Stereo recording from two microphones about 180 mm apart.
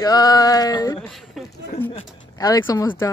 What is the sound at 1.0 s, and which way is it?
Speech, centre (ahead or behind).